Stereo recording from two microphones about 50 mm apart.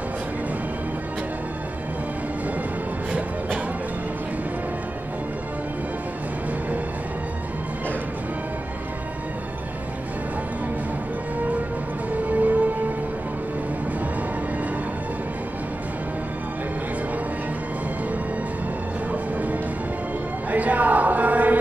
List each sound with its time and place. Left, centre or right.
3.1 s music: right
12.3 s music: right
20.5 s a sound: right